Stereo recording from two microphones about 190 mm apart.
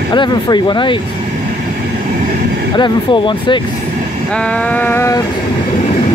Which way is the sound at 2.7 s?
25° left (ahead or behind).